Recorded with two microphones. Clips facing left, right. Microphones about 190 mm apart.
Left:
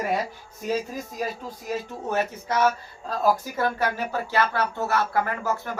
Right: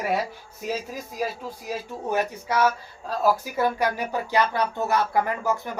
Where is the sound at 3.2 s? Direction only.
10° right (ahead or behind).